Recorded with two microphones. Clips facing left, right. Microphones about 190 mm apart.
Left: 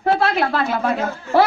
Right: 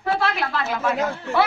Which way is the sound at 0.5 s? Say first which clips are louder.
Left 3 dB; 35° left (ahead or behind).